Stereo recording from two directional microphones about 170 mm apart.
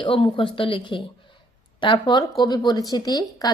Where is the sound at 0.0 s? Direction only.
30° left (ahead or behind).